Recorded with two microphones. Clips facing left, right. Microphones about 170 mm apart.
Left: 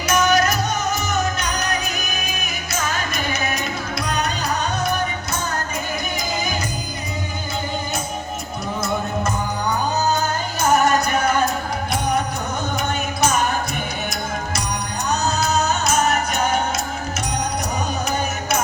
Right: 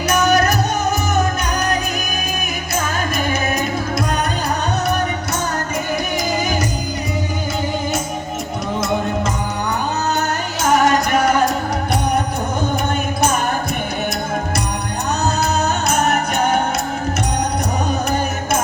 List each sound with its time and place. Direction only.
0.3 s music: 60° right (ahead or behind)
10.2 s music: 90° right
15.6 s music: 60° right (ahead or behind)